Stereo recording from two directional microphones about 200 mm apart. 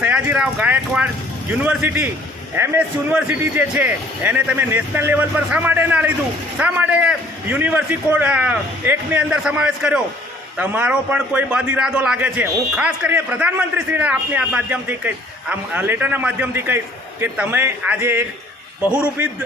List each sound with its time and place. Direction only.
0.0 s a man's voice: 5° right (ahead or behind)